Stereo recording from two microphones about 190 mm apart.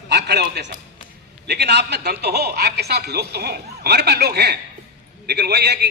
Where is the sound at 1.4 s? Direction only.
60° right (ahead or behind).